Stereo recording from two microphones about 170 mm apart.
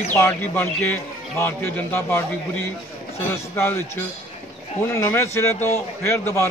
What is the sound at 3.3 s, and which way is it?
Speech, 15° left (ahead or behind).